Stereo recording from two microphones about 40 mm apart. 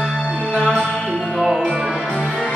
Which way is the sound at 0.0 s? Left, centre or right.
Centre.